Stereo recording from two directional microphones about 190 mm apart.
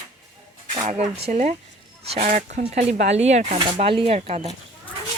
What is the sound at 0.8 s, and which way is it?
Speech, 35° right (ahead or behind).